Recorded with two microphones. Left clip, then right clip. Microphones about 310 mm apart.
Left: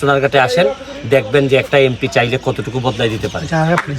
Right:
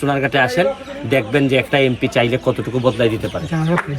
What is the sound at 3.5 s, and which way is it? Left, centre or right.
Speech, left.